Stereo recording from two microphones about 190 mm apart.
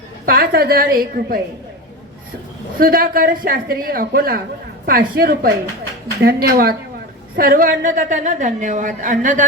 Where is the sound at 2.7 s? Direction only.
50° right (ahead or behind).